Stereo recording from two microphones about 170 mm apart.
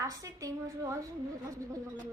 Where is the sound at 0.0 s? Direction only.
20° right (ahead or behind).